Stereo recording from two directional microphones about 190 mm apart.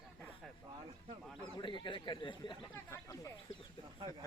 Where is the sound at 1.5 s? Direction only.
25° left (ahead or behind).